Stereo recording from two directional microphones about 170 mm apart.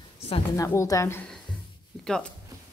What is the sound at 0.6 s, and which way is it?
A woman's voice, 15° left (ahead or behind).